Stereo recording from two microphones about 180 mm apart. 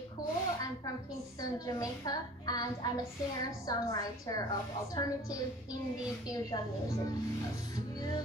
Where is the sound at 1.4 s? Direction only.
20° left (ahead or behind).